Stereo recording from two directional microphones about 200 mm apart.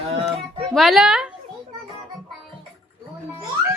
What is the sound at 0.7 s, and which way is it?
Speech, centre (ahead or behind).